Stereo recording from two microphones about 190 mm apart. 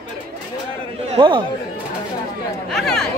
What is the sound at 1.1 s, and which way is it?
Speech, 25° right (ahead or behind).